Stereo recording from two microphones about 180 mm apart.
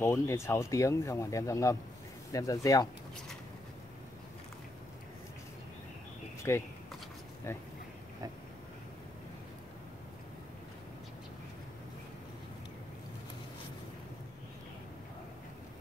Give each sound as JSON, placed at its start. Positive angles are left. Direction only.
{"t": 0.0, "sound": "speech", "side_deg": 15}
{"t": 6.5, "sound": "speech", "side_deg": 15}